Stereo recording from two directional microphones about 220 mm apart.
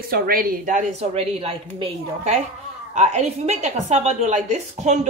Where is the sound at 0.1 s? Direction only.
40° right (ahead or behind).